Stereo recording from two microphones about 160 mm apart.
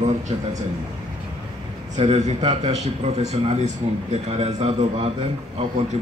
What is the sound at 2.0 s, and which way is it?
A man's voice, 45° right (ahead or behind).